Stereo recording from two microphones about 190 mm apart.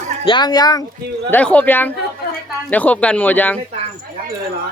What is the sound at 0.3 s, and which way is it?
Speech, 20° left (ahead or behind).